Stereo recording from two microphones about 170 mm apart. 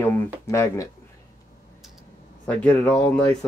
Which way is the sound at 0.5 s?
15° left (ahead or behind).